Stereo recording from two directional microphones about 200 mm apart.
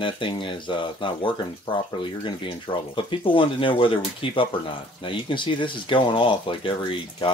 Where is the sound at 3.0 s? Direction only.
25° left (ahead or behind).